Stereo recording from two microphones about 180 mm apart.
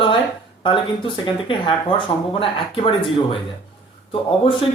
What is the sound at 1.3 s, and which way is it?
Speech, 25° left (ahead or behind).